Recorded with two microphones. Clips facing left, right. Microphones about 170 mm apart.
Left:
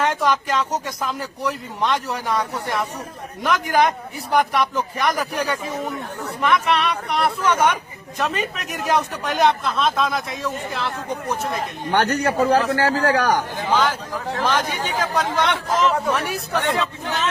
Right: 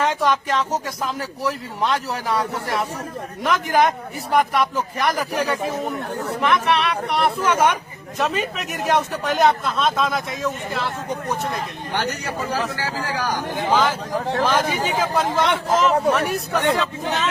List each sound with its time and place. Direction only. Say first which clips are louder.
0.0 s speech: even; centre (ahead or behind)
11.9 s speech: left 8 dB; 60° left (ahead or behind)
13.7 s speech: right 1 dB; 5° right (ahead or behind)